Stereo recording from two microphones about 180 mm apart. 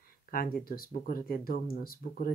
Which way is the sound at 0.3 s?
55° left (ahead or behind).